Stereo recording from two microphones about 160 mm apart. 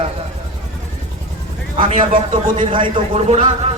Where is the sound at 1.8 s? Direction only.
55° right (ahead or behind).